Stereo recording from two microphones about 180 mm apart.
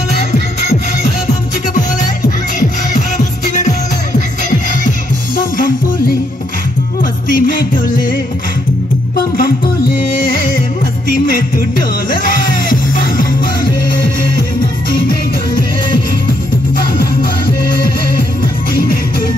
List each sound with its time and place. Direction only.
0.1 s music: 35° left (ahead or behind)
7.0 s music: 50° left (ahead or behind)
10.1 s music: 50° left (ahead or behind)
14.9 s music: 55° left (ahead or behind)
16.7 s music: 55° left (ahead or behind)
18.7 s music: 55° left (ahead or behind)